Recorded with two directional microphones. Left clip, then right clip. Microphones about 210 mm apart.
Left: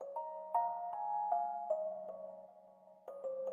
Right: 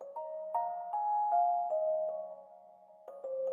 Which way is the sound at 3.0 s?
Centre (ahead or behind).